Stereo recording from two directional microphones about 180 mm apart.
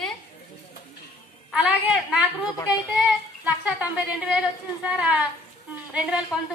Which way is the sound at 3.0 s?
10° right (ahead or behind).